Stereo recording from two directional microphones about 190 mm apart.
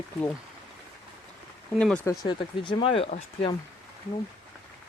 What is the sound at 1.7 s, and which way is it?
Speech, 5° left (ahead or behind).